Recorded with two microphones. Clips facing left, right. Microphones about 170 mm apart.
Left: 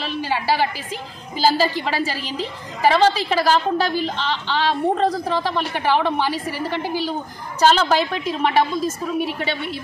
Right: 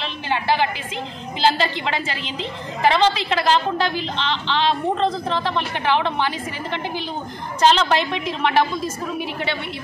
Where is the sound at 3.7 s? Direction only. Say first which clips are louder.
Left 2 dB; 40° left (ahead or behind).